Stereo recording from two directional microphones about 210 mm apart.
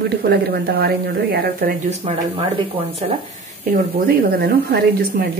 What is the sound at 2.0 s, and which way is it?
Speech, 25° right (ahead or behind).